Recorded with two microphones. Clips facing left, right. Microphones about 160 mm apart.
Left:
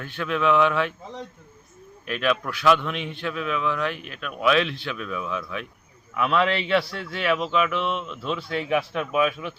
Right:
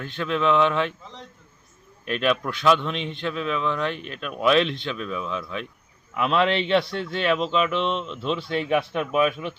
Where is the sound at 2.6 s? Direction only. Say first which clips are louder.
Even; 25° right (ahead or behind).